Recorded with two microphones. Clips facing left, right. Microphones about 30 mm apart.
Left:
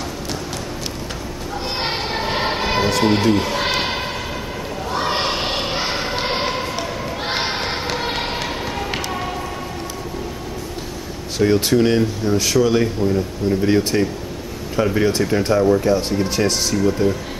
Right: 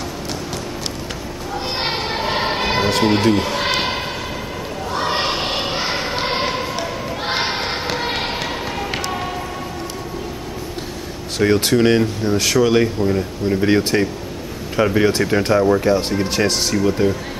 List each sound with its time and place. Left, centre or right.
1.8 s a sound: centre
3.0 s speech: centre
4.9 s basketball bounce: centre
11.3 s speech: centre